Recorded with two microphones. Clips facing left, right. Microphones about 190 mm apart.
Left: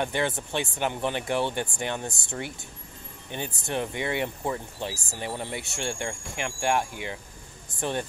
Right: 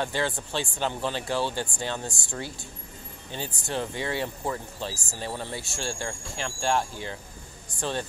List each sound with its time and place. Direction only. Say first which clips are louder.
0.0 s speech: left 1 dB; 20° left (ahead or behind)